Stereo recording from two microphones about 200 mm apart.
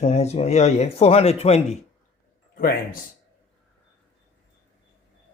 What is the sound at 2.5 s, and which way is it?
Speech, 45° left (ahead or behind).